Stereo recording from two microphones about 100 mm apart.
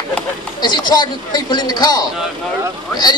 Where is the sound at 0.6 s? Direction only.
45° left (ahead or behind).